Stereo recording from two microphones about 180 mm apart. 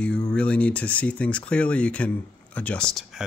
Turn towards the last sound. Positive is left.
turn(degrees=5)  # may be behind; listen again after turning